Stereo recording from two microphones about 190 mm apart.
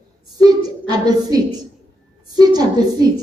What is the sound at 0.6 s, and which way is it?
A woman's voice, 20° right (ahead or behind).